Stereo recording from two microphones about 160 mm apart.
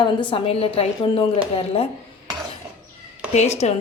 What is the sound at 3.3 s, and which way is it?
Speech, 45° left (ahead or behind).